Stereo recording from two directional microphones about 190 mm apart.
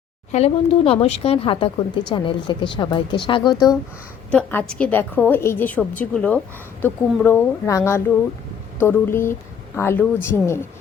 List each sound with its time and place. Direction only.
0.3 s speech: 35° left (ahead or behind)
4.3 s a woman's voice: 5° left (ahead or behind)